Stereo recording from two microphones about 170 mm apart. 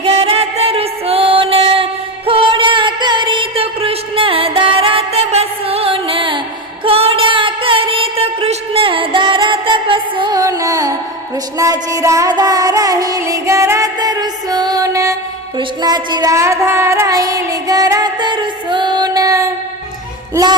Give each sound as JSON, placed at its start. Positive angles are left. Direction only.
{"t": 0.0, "sound": "music", "side_deg": -35}